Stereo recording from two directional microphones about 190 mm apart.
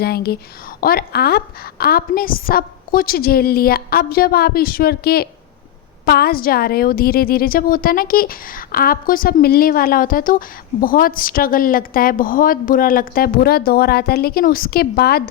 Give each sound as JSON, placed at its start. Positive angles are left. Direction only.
{"t": 0.0, "sound": "a woman's voice", "side_deg": 55}